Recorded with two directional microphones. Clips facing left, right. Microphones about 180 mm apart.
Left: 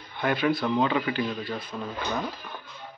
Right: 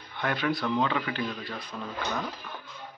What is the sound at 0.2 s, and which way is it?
Speech, 5° left (ahead or behind).